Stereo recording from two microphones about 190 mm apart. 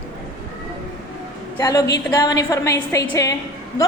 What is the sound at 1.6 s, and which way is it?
A woman's voice, 20° left (ahead or behind).